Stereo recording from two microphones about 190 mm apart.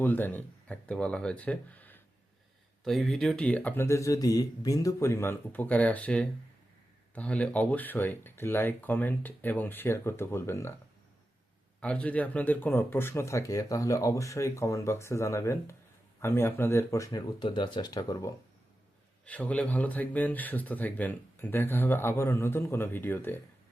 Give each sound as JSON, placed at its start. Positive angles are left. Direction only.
{"t": 0.0, "sound": "speech", "side_deg": 10}
{"t": 11.8, "sound": "speech", "side_deg": 5}
{"t": 19.2, "sound": "speech", "side_deg": 5}